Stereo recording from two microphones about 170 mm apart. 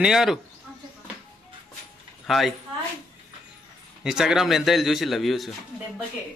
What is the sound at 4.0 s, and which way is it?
A man's voice, 5° right (ahead or behind).